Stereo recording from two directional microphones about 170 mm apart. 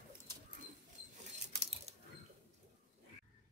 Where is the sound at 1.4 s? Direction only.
40° right (ahead or behind).